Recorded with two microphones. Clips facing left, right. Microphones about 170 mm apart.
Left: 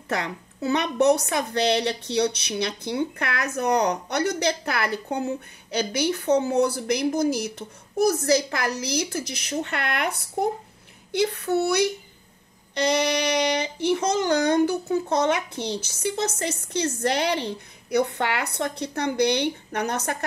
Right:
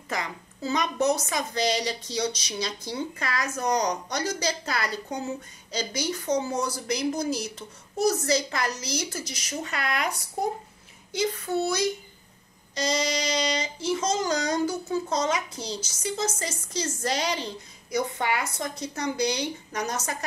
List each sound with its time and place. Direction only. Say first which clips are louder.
0.1 s a woman's voice: left 4 dB; 65° left (ahead or behind)